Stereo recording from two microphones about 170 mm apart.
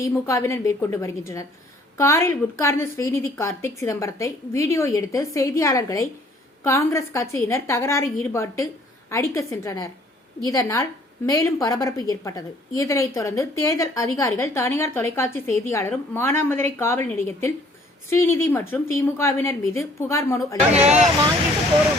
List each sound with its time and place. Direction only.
0.0 s a woman's voice: 15° left (ahead or behind)
20.7 s speech: 40° right (ahead or behind)